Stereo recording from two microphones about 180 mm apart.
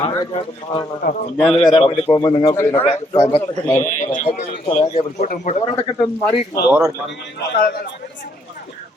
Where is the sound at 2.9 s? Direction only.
30° left (ahead or behind).